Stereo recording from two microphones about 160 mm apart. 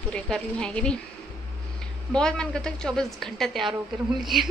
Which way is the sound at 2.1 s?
5° left (ahead or behind).